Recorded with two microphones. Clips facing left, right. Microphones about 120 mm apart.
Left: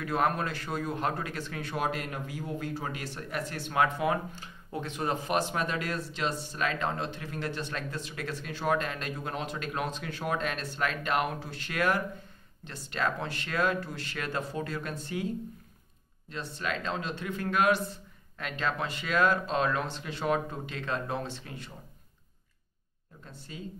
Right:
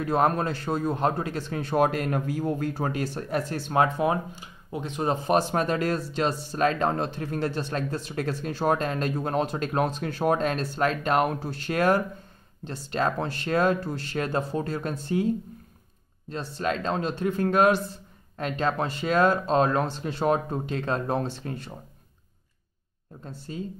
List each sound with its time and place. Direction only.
0.0 s speech: 30° right (ahead or behind)
1.8 s speech: 50° right (ahead or behind); by 4.2 s 30° right (ahead or behind)
4.4 s speech: 20° right (ahead or behind); by 15.2 s 35° right (ahead or behind)
16.3 s speech: 35° right (ahead or behind)
23.2 s speech: 40° right (ahead or behind)